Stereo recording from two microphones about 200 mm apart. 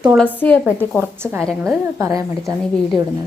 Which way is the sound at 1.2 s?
10° right (ahead or behind).